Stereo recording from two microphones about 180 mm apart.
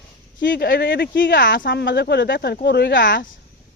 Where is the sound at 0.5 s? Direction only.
60° left (ahead or behind); by 3.2 s 80° left.